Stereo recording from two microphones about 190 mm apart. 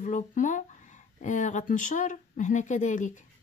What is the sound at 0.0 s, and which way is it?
Speech, 40° left (ahead or behind).